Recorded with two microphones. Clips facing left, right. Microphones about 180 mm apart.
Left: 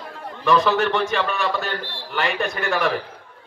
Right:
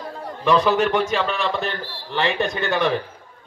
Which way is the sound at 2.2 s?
25° right (ahead or behind).